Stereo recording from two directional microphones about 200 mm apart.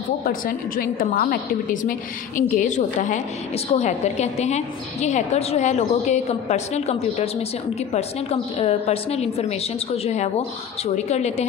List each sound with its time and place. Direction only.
0.2 s a woman's voice: 45° left (ahead or behind)